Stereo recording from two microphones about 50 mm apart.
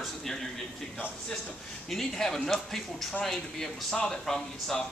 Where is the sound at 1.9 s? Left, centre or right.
Centre.